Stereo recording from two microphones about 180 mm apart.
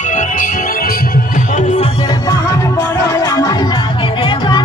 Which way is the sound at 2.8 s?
15° left (ahead or behind).